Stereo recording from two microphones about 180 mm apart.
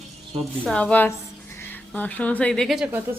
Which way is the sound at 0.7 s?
5° left (ahead or behind).